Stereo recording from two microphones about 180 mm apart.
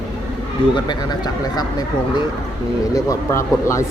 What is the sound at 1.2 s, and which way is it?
Speech, 20° left (ahead or behind).